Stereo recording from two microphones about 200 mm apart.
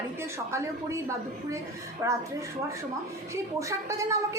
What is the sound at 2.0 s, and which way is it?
Speech, 15° right (ahead or behind).